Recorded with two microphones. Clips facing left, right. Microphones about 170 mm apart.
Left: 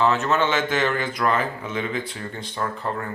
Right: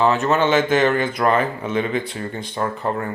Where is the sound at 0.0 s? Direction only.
15° right (ahead or behind).